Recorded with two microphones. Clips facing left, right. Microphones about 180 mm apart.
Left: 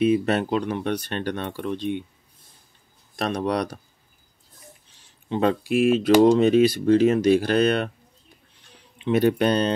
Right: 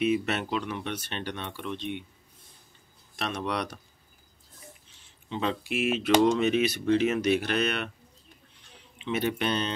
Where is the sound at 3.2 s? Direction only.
40° left (ahead or behind).